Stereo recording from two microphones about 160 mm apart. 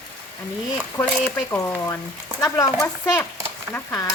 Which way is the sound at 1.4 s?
15° left (ahead or behind).